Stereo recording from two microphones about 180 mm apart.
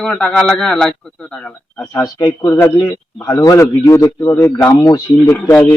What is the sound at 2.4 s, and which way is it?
Speech, 10° left (ahead or behind).